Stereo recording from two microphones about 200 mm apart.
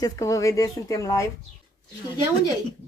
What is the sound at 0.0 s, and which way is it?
Speech, 15° left (ahead or behind).